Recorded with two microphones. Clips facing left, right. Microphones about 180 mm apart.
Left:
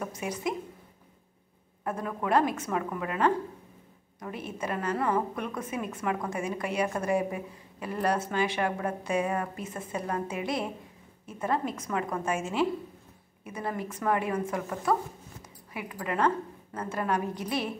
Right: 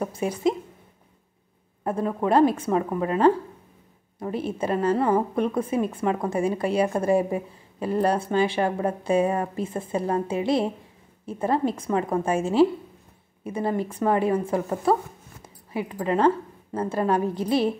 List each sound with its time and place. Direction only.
0.0 s a woman's voice: 30° right (ahead or behind)
1.9 s a woman's voice: 30° right (ahead or behind)